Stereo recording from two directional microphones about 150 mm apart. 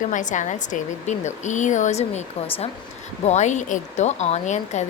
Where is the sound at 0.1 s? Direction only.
55° left (ahead or behind).